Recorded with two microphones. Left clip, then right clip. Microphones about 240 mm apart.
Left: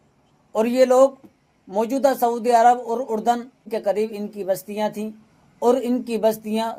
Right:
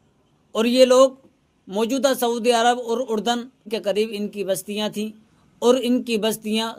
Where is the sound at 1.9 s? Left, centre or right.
Right.